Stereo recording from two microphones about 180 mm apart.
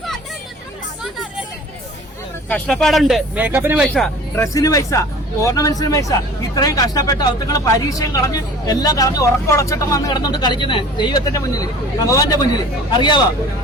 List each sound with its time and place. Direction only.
2.5 s speech: 5° left (ahead or behind)
3.8 s speech: centre (ahead or behind)
4.4 s a man's voice: 20° left (ahead or behind)